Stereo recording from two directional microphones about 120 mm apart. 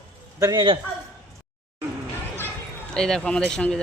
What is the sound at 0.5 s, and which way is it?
Speech, 45° right (ahead or behind).